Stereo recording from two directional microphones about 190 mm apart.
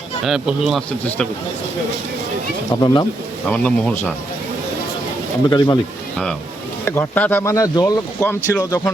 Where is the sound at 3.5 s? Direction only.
5° left (ahead or behind).